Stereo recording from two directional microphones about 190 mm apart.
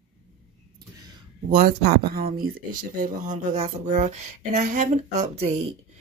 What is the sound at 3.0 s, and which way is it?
Speech, 40° right (ahead or behind).